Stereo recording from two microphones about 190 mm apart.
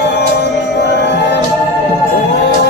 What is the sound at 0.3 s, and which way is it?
Music, 60° left (ahead or behind).